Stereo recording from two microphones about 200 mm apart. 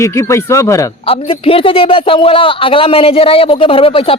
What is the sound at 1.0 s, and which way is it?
A man's voice, 25° left (ahead or behind).